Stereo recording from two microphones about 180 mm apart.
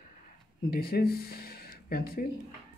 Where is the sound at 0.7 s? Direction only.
55° left (ahead or behind).